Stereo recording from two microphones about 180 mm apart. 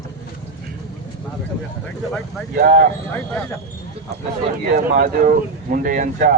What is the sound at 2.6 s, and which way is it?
Speech, 55° right (ahead or behind).